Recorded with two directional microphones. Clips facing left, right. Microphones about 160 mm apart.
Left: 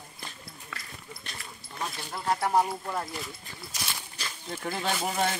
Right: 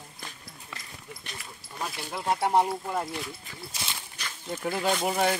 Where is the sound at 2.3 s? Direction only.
20° right (ahead or behind).